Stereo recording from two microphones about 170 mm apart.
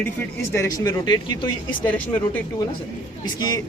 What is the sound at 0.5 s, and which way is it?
A woman's voice, 20° left (ahead or behind).